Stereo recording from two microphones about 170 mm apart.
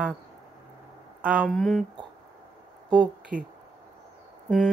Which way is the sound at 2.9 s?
5° right (ahead or behind).